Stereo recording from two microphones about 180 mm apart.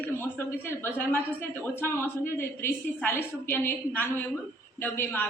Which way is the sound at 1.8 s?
10° left (ahead or behind).